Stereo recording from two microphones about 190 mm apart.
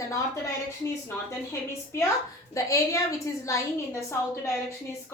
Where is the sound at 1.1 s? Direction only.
15° left (ahead or behind).